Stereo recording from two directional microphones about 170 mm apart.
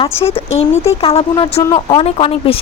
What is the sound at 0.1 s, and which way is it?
Speech, 15° left (ahead or behind).